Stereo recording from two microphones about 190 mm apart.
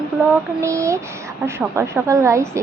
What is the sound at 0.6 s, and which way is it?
A woman's voice, 15° right (ahead or behind).